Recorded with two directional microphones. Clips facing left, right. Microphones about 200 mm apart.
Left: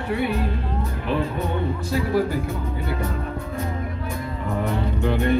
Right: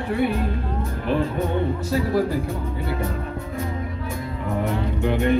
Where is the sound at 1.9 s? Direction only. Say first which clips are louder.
Left 1 dB; 35° right (ahead or behind).